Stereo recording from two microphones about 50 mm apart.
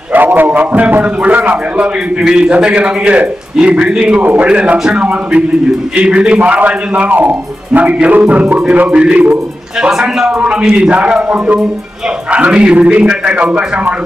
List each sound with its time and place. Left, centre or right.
0.1 s a man's voice: right; by 4.2 s centre
4.2 s a man's voice: right
9.8 s a man's voice: centre; by 13.9 s right